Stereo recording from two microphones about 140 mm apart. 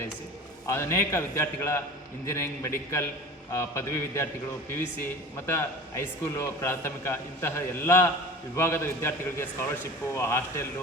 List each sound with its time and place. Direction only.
0.7 s a man's voice: 20° left (ahead or behind)
5.5 s a man's voice: 20° left (ahead or behind)